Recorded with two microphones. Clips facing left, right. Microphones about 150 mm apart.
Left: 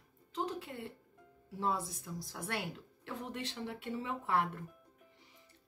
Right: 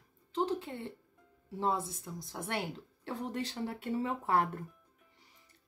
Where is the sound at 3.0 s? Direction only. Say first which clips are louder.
Right 5 dB; 35° right (ahead or behind).